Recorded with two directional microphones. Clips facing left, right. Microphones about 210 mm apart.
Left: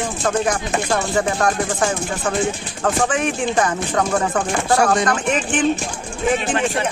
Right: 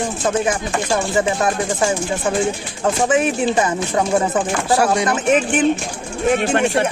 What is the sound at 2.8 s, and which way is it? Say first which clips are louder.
Speech: right 3 dB; 15° right (ahead or behind).